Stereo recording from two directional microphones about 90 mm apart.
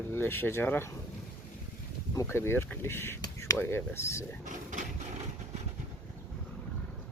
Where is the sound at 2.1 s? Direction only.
30° left (ahead or behind).